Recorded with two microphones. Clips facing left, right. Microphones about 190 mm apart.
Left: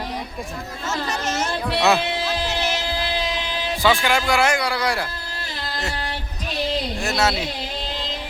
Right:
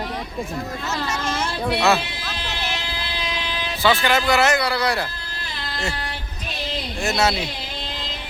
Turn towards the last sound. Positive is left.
turn(degrees=0)  # may be behind; listen again after turning